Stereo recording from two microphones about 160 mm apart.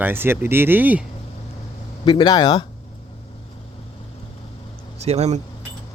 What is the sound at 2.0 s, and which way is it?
Speech, 30° left (ahead or behind).